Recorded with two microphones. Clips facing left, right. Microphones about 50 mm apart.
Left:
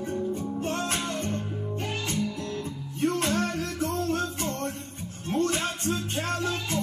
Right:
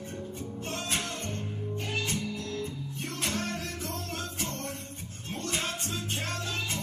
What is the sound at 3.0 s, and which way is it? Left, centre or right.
Music, left.